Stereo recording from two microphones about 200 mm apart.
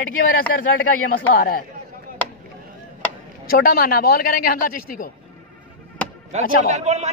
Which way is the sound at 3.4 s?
45° left (ahead or behind).